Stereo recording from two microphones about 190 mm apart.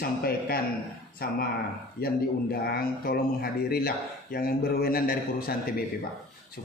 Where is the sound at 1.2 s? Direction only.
50° left (ahead or behind).